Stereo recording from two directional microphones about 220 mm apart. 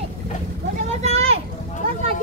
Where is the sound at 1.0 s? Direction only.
30° right (ahead or behind).